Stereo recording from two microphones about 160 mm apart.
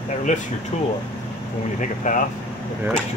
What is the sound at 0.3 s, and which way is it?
Speech, 50° left (ahead or behind).